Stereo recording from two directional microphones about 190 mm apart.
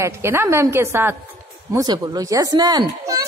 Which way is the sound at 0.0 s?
15° right (ahead or behind).